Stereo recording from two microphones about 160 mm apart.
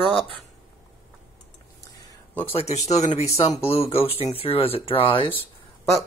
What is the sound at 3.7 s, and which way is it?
Speech, 35° left (ahead or behind).